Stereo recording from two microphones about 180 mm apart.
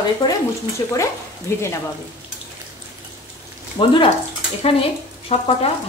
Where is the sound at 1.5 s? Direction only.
15° left (ahead or behind).